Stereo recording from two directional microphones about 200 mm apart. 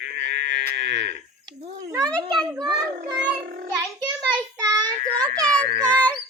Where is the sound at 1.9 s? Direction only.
20° right (ahead or behind).